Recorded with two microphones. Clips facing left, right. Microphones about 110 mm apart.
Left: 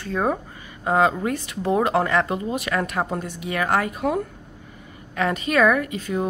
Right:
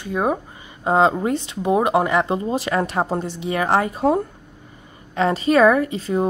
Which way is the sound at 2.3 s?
30° right (ahead or behind).